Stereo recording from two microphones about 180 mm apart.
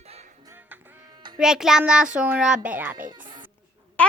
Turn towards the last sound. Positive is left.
turn(degrees=10)  # may be behind; listen again after turning